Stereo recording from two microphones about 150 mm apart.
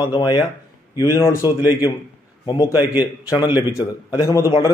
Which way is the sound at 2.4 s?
30° left (ahead or behind).